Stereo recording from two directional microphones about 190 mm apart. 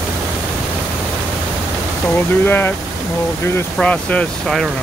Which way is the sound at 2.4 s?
10° left (ahead or behind).